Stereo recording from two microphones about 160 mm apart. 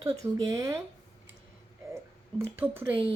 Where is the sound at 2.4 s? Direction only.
15° right (ahead or behind).